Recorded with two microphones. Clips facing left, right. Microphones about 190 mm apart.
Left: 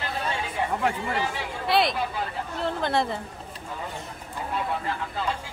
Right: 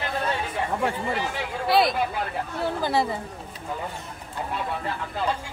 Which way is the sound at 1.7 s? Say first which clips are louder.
Right 2 dB; centre (ahead or behind).